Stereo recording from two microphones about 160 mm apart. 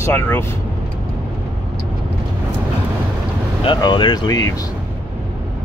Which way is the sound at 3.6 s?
30° left (ahead or behind).